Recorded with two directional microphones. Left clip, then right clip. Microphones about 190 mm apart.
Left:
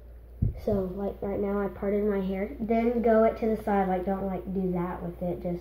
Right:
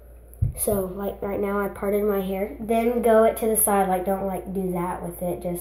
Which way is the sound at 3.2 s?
Centre (ahead or behind).